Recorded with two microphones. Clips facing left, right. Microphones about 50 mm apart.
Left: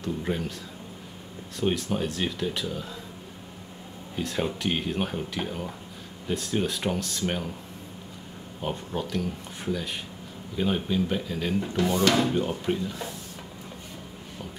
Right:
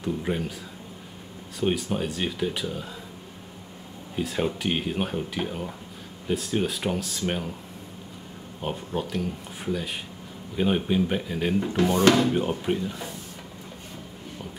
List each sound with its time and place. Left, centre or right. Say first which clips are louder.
0.0 s speech: right 2 dB; centre
1.6 s speech: right 1 dB; centre
4.2 s speech: right 2 dB; centre
8.5 s speech: right 1 dB; centre